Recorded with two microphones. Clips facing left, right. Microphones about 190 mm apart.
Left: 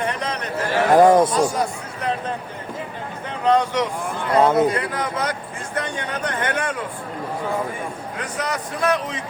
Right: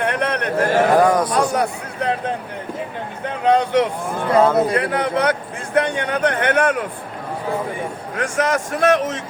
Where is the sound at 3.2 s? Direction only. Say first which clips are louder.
Right 2 dB; 60° right (ahead or behind).